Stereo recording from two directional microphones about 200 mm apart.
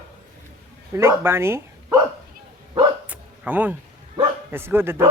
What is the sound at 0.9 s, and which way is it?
Speech, 15° right (ahead or behind).